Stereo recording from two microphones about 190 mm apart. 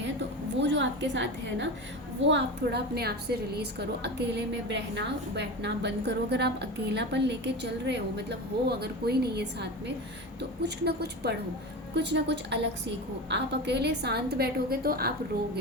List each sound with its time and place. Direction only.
0.0 s a woman's voice: 65° right (ahead or behind)